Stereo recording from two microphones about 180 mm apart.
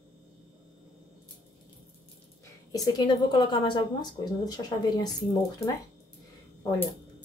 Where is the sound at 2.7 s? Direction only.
25° left (ahead or behind).